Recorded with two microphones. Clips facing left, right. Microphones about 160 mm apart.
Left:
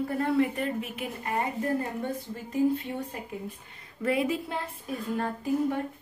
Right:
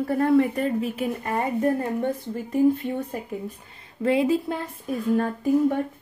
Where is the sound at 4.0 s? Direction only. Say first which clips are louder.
Right 6 dB; 25° right (ahead or behind).